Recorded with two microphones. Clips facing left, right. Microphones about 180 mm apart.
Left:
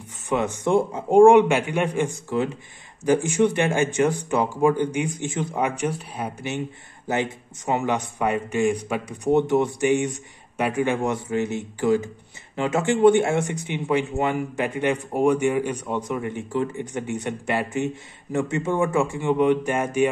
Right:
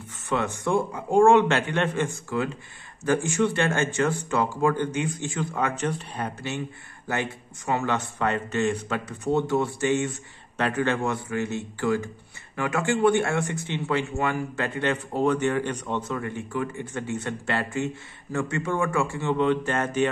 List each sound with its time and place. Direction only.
0.3 s speech: 15° left (ahead or behind)